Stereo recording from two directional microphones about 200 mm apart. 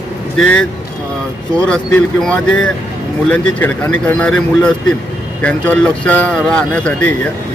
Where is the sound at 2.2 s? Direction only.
5° left (ahead or behind).